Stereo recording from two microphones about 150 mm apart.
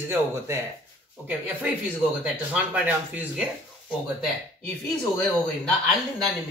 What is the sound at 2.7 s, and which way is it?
Speech, 10° right (ahead or behind).